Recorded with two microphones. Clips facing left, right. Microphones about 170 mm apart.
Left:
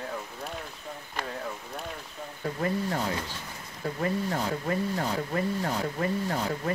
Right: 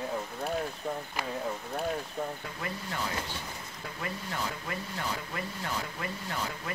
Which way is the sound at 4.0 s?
35° left (ahead or behind).